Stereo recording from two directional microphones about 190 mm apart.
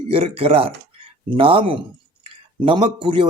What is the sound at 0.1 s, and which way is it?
Speech, 30° right (ahead or behind).